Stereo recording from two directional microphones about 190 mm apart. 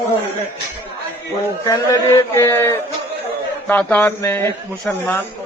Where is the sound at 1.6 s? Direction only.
15° left (ahead or behind).